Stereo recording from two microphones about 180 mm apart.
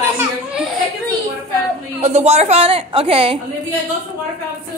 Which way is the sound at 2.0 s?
35° right (ahead or behind).